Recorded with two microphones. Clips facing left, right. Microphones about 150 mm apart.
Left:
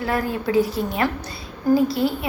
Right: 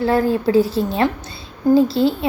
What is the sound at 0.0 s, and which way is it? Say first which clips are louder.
A woman's voice: right 7 dB; 30° right (ahead or behind).